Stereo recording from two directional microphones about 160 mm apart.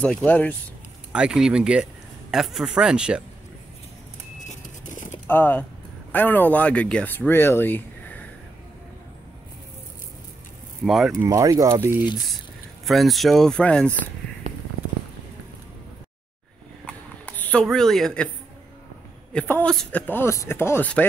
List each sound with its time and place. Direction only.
0.0 s speech: 10° left (ahead or behind)
1.1 s speech: 5° right (ahead or behind)
4.8 s a sound: 55° left (ahead or behind)
5.2 s speech: 10° left (ahead or behind)
10.9 s speech: centre (ahead or behind)
11.1 s speech: 20° right (ahead or behind)
12.8 s speech: centre (ahead or behind)
14.5 s a sound: 45° right (ahead or behind)
16.8 s a sound: 10° left (ahead or behind)
19.3 s speech: 10° left (ahead or behind)